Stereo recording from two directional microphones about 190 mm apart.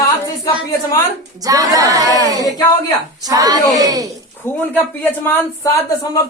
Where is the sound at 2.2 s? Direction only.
20° right (ahead or behind).